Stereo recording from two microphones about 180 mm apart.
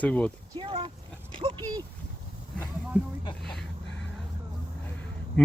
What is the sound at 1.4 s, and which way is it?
Dog, 25° right (ahead or behind).